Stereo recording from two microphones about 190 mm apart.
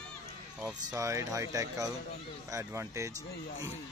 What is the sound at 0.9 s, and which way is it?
Speech, 15° right (ahead or behind).